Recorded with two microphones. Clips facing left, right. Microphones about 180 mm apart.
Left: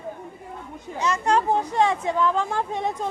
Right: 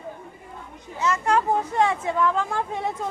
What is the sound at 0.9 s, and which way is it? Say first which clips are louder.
A woman's voice: even; 15° left (ahead or behind).